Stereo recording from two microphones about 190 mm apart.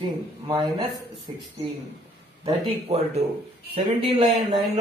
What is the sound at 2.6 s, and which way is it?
Speech, 35° right (ahead or behind).